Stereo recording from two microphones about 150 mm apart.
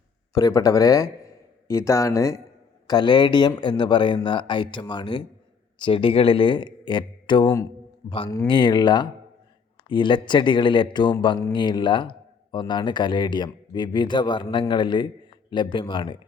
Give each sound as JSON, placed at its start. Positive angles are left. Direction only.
{"t": 0.3, "sound": "speech", "side_deg": 25}